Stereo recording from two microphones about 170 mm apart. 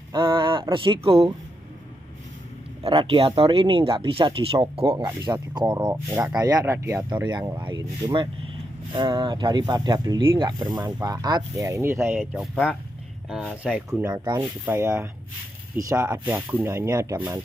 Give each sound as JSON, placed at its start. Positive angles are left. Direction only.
{"t": 0.1, "sound": "speech", "side_deg": -30}
{"t": 2.8, "sound": "speech", "side_deg": -30}
{"t": 12.2, "sound": "speech", "side_deg": 0}
{"t": 14.3, "sound": "speech", "side_deg": -15}